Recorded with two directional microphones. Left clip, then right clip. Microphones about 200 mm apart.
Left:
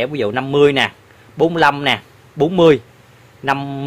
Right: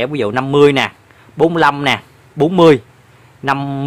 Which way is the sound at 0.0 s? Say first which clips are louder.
Right 2 dB; 15° right (ahead or behind).